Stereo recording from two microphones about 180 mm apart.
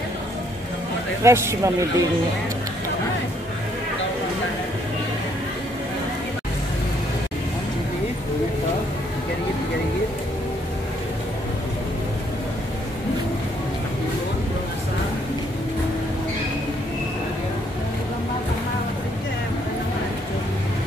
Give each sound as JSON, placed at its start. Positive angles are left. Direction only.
{"t": 1.2, "sound": "a man's voice", "side_deg": -15}